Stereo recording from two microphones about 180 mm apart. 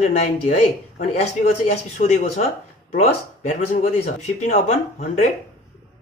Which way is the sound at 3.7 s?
40° left (ahead or behind).